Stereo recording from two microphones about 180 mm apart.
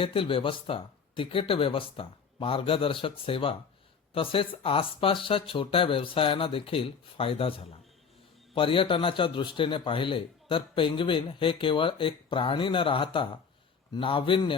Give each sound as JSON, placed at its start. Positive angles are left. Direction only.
{"t": 0.0, "sound": "a man's voice", "side_deg": 30}